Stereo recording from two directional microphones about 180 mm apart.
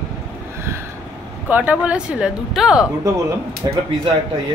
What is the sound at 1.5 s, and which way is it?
Speech, 10° right (ahead or behind).